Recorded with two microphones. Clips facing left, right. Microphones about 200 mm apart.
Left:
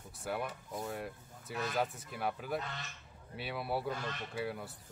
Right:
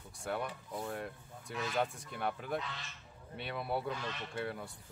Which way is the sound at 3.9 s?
45° left (ahead or behind).